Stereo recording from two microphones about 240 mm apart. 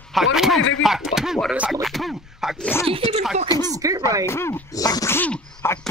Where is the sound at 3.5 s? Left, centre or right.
Centre.